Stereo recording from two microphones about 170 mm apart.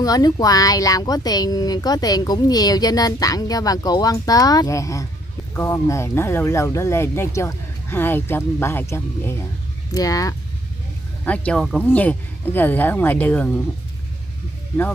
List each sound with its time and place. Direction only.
0.0 s speech: 20° left (ahead or behind)
11.2 s speech: 5° left (ahead or behind)